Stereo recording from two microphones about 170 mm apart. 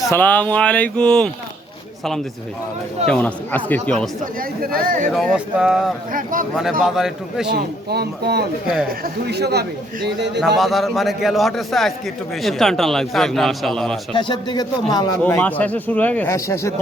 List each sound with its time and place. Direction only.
0.0 s speech: 15° left (ahead or behind)
3.1 s speech: 10° left (ahead or behind)
4.4 s speech: 60° right (ahead or behind)
5.1 s speech: 5° right (ahead or behind)
6.1 s speech: 55° right (ahead or behind)
6.6 s speech: centre (ahead or behind)
7.5 s speech: 70° right (ahead or behind)
10.4 s speech: centre (ahead or behind)
14.1 s speech: 30° left (ahead or behind)
15.4 s speech: 10° left (ahead or behind)